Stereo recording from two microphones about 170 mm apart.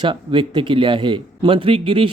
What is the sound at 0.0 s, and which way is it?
Speech, 30° right (ahead or behind).